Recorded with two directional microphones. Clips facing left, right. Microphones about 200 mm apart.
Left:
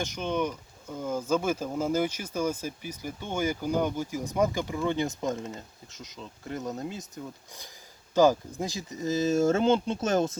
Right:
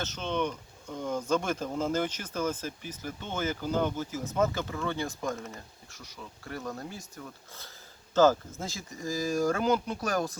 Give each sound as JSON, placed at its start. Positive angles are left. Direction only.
{"t": 0.0, "sound": "speech", "side_deg": 10}